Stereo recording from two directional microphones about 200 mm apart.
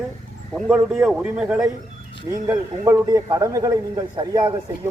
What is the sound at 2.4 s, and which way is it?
A man's voice, 15° right (ahead or behind).